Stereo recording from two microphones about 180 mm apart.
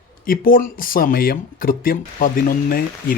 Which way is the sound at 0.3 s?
50° left (ahead or behind).